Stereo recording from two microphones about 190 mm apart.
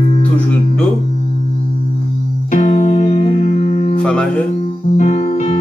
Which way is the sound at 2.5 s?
40° left (ahead or behind).